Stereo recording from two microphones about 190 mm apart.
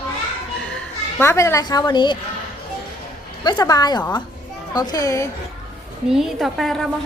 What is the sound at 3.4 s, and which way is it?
A woman's voice, 20° left (ahead or behind).